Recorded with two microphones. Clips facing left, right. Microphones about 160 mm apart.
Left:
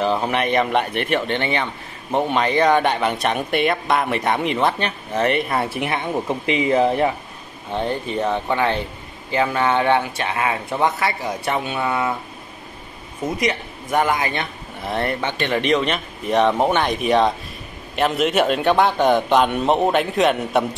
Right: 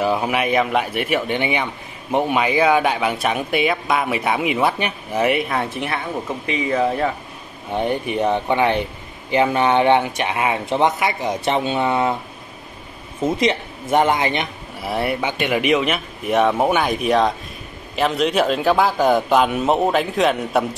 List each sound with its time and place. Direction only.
0.0 s speech: 10° right (ahead or behind)
5.5 s speech: 10° left (ahead or behind)
5.9 s speech: 30° left (ahead or behind)
7.7 s speech: 15° right (ahead or behind)
13.2 s speech: 25° right (ahead or behind)
14.8 s speech: 10° right (ahead or behind)